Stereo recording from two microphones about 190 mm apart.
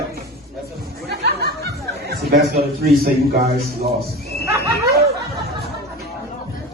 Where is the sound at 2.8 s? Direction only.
55° right (ahead or behind).